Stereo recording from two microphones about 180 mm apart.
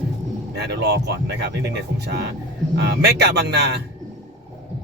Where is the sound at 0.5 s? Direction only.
65° right (ahead or behind).